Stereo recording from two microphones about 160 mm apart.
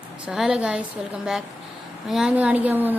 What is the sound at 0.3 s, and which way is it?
A woman's voice, 5° right (ahead or behind).